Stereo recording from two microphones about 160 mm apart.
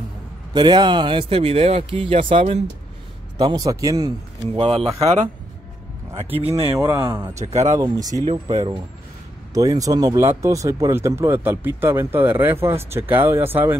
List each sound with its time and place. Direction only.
0.5 s a man's voice: 25° right (ahead or behind)
3.3 s speech: 25° right (ahead or behind)
4.6 s a man's voice: 35° right (ahead or behind)
6.4 s a man's voice: 35° right (ahead or behind)
6.8 s speech: 20° right (ahead or behind)
7.3 s speech: 45° right (ahead or behind)
7.8 s speech: 25° right (ahead or behind)
9.5 s speech: 20° right (ahead or behind)